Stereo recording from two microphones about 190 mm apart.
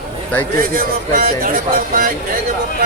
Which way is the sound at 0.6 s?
50° right (ahead or behind).